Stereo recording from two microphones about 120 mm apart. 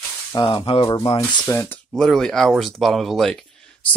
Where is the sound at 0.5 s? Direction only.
50° left (ahead or behind).